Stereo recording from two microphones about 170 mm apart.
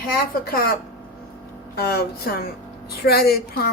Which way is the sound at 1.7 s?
65° left (ahead or behind).